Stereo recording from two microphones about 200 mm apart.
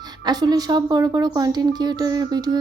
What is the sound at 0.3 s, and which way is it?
A woman's voice, 20° right (ahead or behind).